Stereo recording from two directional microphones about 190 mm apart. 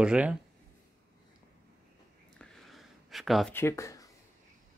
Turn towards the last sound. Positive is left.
turn(degrees=15)  # may be behind; listen again after turning